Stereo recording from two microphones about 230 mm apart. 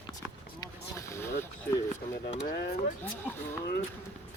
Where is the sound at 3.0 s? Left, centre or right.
Centre.